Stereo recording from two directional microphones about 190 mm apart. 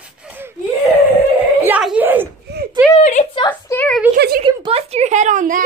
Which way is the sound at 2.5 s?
60° right (ahead or behind).